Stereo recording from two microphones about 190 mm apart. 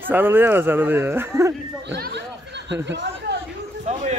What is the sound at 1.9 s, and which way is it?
Chatter, 60° right (ahead or behind).